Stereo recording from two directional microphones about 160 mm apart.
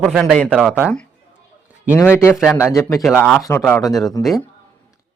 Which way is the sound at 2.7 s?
20° left (ahead or behind).